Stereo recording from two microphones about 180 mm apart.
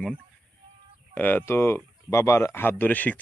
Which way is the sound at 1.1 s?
10° left (ahead or behind).